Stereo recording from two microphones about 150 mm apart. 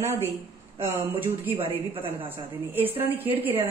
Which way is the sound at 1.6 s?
35° right (ahead or behind).